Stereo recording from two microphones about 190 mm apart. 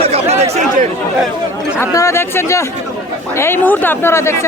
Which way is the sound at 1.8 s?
15° left (ahead or behind).